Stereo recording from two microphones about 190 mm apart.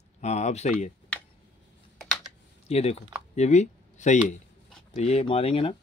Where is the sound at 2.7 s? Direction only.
35° left (ahead or behind).